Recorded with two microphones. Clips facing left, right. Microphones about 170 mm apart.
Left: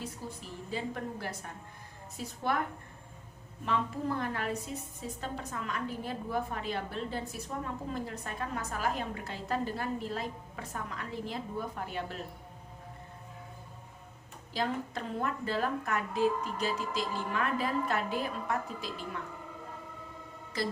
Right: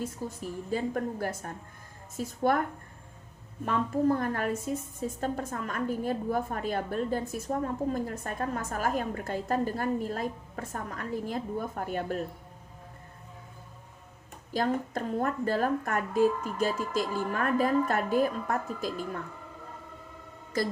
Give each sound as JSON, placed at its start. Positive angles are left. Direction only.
{"t": 0.0, "sound": "a woman's voice", "side_deg": -50}
{"t": 3.7, "sound": "a woman's voice", "side_deg": -45}
{"t": 14.5, "sound": "a woman's voice", "side_deg": -45}
{"t": 20.5, "sound": "a woman's voice", "side_deg": -45}